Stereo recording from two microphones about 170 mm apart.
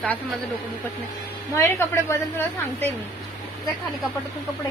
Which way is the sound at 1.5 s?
15° left (ahead or behind).